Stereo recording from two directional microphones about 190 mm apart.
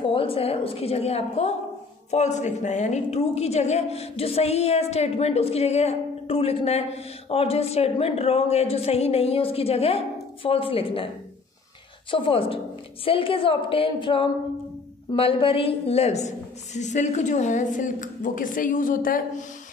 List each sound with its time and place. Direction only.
0.0 s a woman's voice: 30° left (ahead or behind)
12.1 s a woman's voice: 30° left (ahead or behind); by 19.4 s 45° left (ahead or behind)